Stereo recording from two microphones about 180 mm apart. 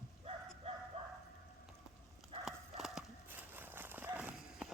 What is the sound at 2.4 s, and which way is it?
Horse, centre (ahead or behind).